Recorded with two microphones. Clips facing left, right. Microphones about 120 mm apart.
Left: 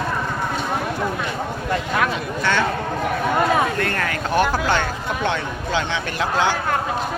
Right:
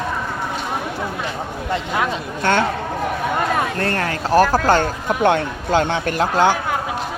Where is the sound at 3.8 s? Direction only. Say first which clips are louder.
Right 2 dB; 35° right (ahead or behind).